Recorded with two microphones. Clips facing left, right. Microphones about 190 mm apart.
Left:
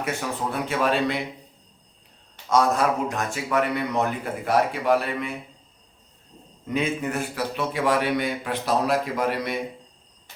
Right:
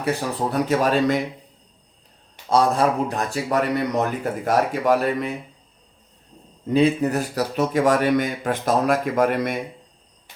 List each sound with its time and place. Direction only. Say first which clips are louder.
0.0 s speech: right 4 dB; 35° right (ahead or behind)
2.5 s speech: right 2 dB; 30° right (ahead or behind)
6.7 s speech: right 7 dB; 35° right (ahead or behind); by 9.6 s 50° right (ahead or behind)